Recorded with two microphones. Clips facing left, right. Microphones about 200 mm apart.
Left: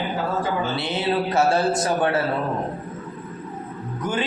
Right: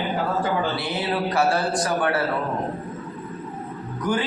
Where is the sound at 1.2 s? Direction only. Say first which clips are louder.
Left 1 dB; 25° left (ahead or behind).